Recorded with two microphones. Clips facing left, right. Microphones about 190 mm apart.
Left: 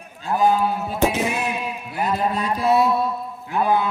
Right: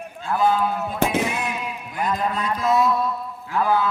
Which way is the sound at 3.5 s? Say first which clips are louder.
Left 1 dB; 20° left (ahead or behind).